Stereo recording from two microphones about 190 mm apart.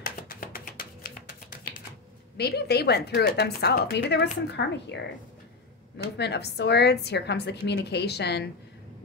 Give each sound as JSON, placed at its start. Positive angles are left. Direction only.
{"t": 0.0, "sound": "music", "side_deg": 45}
{"t": 2.3, "sound": "a woman's voice", "side_deg": 60}
{"t": 6.1, "sound": "a woman's voice", "side_deg": 60}